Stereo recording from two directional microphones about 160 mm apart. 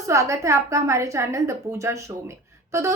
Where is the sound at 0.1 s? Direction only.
20° right (ahead or behind).